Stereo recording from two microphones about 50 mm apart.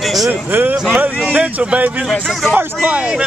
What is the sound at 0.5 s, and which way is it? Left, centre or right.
Speech, right.